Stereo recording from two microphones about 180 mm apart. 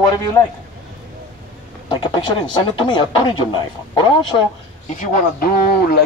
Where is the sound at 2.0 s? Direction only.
25° left (ahead or behind).